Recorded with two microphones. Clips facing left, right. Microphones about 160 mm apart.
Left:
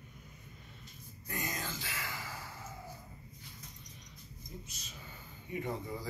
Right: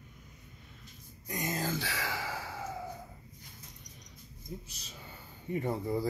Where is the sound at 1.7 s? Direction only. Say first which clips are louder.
Right 8 dB; 75° right (ahead or behind).